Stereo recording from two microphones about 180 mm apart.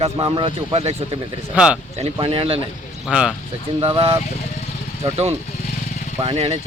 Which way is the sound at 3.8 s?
30° right (ahead or behind).